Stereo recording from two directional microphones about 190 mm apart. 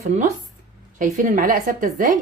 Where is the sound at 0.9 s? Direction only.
45° right (ahead or behind).